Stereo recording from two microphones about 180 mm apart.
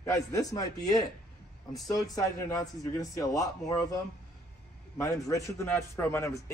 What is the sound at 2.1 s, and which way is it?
A man's voice, 15° left (ahead or behind).